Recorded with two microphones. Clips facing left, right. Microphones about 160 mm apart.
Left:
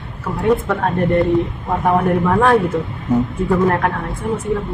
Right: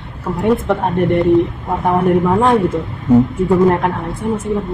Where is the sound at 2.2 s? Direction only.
15° right (ahead or behind).